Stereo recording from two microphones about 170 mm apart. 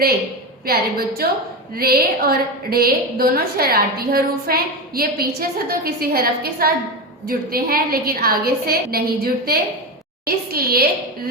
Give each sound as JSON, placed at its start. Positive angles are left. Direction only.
{"t": 0.6, "sound": "a woman's voice", "side_deg": -65}